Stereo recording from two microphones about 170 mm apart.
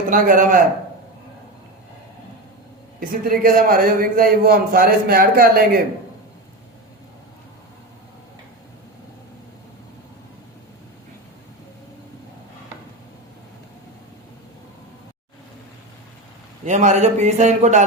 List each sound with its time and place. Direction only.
0.1 s a man's voice: 55° right (ahead or behind)
3.0 s a man's voice: 55° right (ahead or behind)
16.6 s speech: 45° right (ahead or behind)